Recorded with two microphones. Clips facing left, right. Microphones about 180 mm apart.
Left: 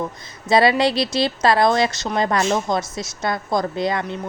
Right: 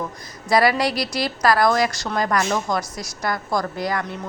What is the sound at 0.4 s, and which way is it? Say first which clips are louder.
A woman's voice: left 2 dB; 25° left (ahead or behind).